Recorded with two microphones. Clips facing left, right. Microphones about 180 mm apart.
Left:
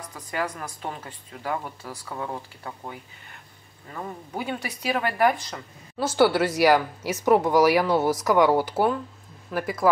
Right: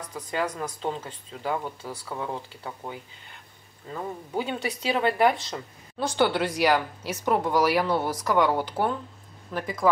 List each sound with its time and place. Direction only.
0.4 s speech: 20° right (ahead or behind)
4.5 s speech: 20° right (ahead or behind)
5.9 s speech: 5° left (ahead or behind)